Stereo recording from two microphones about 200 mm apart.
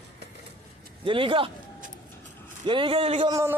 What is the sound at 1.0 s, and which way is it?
Speech, 25° right (ahead or behind).